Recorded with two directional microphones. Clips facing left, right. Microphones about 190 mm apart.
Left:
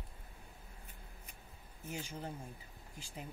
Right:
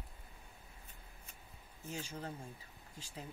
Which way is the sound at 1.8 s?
10° left (ahead or behind).